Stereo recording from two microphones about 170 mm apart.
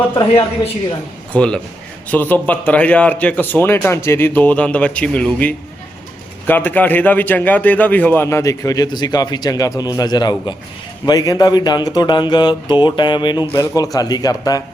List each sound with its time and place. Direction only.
0.3 s a woman's voice: 35° left (ahead or behind)
1.3 s a man's voice: 5° left (ahead or behind); by 14.6 s 20° left (ahead or behind)